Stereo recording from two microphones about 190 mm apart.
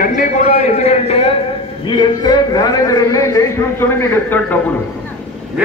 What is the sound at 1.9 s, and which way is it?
A man's voice, 20° left (ahead or behind).